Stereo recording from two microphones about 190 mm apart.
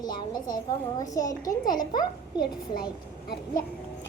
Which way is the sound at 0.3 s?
20° left (ahead or behind).